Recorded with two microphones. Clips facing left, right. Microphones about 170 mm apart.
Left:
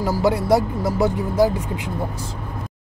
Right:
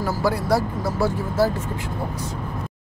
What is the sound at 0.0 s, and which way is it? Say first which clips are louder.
Speech: left 3 dB; 20° left (ahead or behind).